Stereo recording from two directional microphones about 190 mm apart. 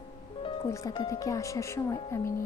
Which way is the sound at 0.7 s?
20° left (ahead or behind).